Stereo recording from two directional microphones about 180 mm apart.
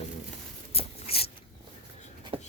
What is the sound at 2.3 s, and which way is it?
Shuffle, 30° right (ahead or behind).